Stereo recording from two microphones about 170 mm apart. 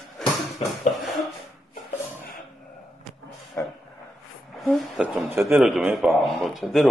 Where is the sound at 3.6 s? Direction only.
15° left (ahead or behind).